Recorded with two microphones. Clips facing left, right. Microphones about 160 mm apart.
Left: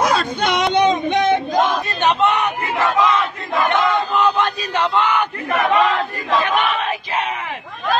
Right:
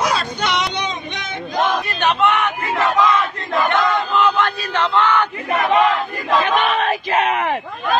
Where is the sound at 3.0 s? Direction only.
30° left (ahead or behind).